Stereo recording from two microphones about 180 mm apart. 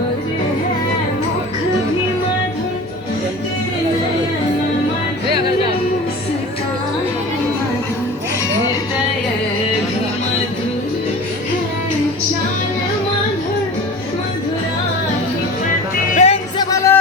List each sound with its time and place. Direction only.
16.1 s music: 35° left (ahead or behind)
16.6 s music: 20° left (ahead or behind)